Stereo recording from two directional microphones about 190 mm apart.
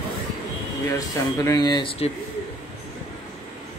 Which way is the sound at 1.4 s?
20° left (ahead or behind).